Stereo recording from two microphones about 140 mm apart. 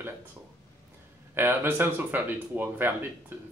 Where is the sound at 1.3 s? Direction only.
15° right (ahead or behind).